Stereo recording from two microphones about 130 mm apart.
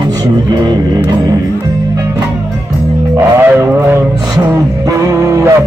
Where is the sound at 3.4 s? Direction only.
20° right (ahead or behind).